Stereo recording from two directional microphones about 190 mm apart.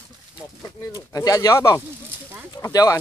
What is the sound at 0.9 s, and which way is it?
Speech, 20° left (ahead or behind).